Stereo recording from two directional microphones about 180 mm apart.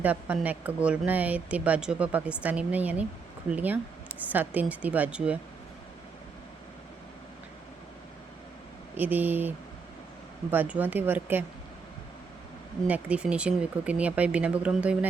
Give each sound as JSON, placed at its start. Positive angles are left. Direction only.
{"t": 0.0, "sound": "speech", "side_deg": -10}
{"t": 9.0, "sound": "speech", "side_deg": -10}
{"t": 10.5, "sound": "speech", "side_deg": -10}
{"t": 12.9, "sound": "speech", "side_deg": -5}